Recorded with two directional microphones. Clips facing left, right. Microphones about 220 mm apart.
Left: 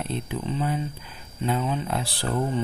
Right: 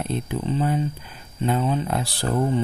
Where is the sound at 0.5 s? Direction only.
45° right (ahead or behind).